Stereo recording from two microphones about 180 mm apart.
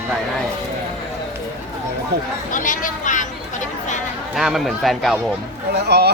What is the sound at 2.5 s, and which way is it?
Chatter, 45° left (ahead or behind).